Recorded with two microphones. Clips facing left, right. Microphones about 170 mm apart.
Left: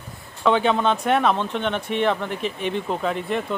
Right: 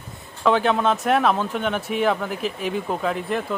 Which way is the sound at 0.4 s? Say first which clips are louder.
Even; centre (ahead or behind).